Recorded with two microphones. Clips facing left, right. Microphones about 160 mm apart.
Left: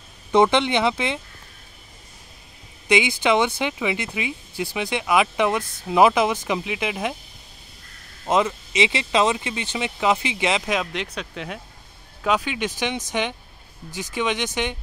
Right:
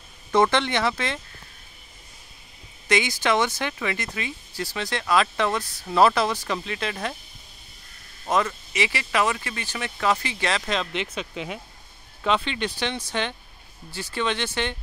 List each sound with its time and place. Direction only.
0.3 s speech: 15° left (ahead or behind)
2.9 s speech: 15° left (ahead or behind)
8.3 s speech: 20° left (ahead or behind); by 12.5 s 5° left (ahead or behind)
12.7 s speech: 15° left (ahead or behind)